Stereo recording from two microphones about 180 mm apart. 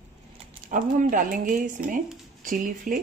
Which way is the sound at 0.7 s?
45° right (ahead or behind).